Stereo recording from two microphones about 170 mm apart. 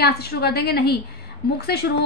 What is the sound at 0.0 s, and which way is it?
A woman's voice, 65° left (ahead or behind).